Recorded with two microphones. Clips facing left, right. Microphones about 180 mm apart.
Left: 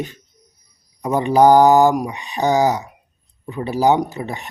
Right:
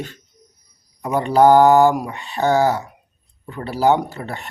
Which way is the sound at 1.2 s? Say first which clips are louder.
Even; 15° left (ahead or behind).